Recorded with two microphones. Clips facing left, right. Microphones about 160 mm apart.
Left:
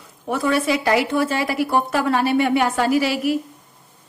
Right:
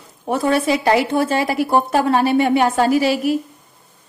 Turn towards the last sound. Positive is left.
turn(degrees=-25)  # may be behind; listen again after turning